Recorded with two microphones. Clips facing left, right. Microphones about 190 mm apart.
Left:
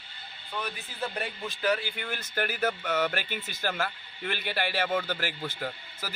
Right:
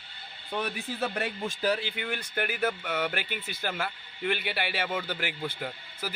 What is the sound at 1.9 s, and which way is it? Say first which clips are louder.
Speech: right 1 dB; 40° left (ahead or behind).